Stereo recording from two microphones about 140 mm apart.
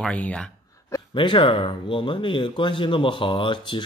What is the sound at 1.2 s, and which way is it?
Speech, 35° left (ahead or behind).